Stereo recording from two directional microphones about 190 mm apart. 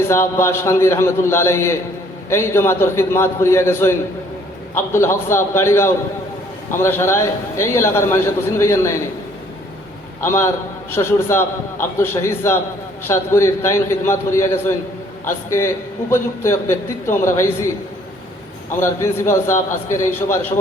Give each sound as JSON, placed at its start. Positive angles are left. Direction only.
{"t": 0.1, "sound": "a man's voice", "side_deg": 15}
{"t": 10.2, "sound": "a man's voice", "side_deg": 15}
{"t": 18.8, "sound": "a man's voice", "side_deg": 15}